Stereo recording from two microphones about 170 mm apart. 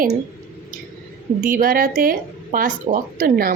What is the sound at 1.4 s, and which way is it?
A woman's voice, 55° right (ahead or behind).